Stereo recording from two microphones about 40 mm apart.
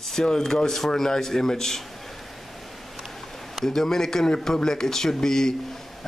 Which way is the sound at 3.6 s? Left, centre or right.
Centre.